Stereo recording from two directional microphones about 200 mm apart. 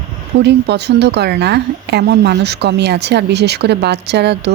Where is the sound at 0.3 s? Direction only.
55° right (ahead or behind).